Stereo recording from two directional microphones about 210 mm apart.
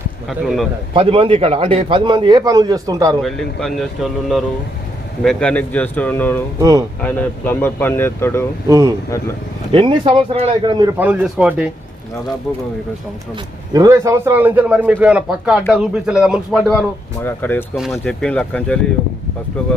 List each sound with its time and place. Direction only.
0.3 s speech: centre (ahead or behind)
0.9 s a man's voice: 25° right (ahead or behind)
3.2 s speech: centre (ahead or behind)
6.6 s a man's voice: 15° right (ahead or behind)
7.0 s speech: 10° left (ahead or behind)
8.6 s a man's voice: 15° right (ahead or behind)
10.9 s a man's voice: 5° right (ahead or behind)
13.7 s a man's voice: 15° right (ahead or behind)
17.2 s speech: 10° left (ahead or behind)